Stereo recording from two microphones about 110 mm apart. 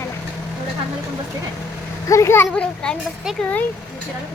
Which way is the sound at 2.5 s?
5° left (ahead or behind).